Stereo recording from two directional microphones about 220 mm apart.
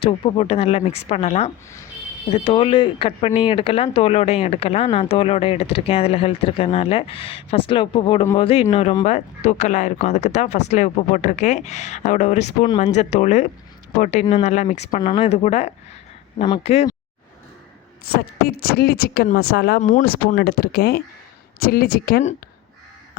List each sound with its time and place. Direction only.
0.0 s speech: 25° left (ahead or behind)
18.0 s speech: 45° left (ahead or behind)